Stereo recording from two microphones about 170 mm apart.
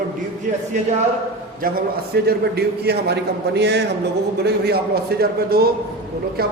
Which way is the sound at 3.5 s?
85° right.